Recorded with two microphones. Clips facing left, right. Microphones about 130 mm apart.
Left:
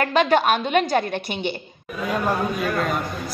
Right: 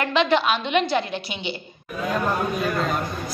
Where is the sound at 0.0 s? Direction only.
45° left (ahead or behind).